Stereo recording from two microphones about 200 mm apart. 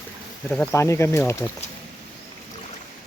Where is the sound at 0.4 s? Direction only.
5° left (ahead or behind).